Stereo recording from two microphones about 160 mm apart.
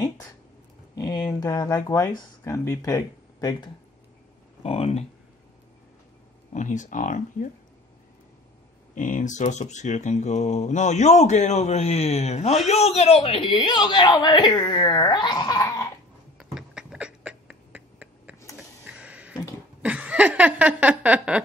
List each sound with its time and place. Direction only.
0.9 s speech: 20° left (ahead or behind)
4.6 s speech: 40° left (ahead or behind)
6.5 s speech: 50° left (ahead or behind)
8.9 s speech: 55° left (ahead or behind); by 15.9 s 20° left (ahead or behind)
16.5 s a sound: 5° right (ahead or behind)